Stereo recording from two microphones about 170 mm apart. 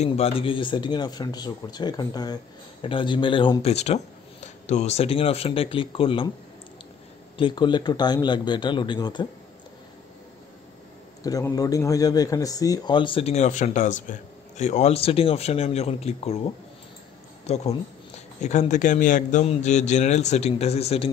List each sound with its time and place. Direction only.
0.0 s a man's voice: 35° left (ahead or behind)
7.3 s speech: 30° left (ahead or behind)
11.2 s a man's voice: 20° left (ahead or behind); by 16.3 s 40° left (ahead or behind)
17.5 s a man's voice: 40° left (ahead or behind)